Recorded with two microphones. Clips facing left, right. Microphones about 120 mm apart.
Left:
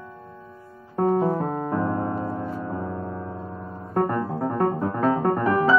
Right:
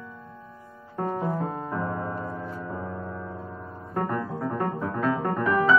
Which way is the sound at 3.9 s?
35° left (ahead or behind).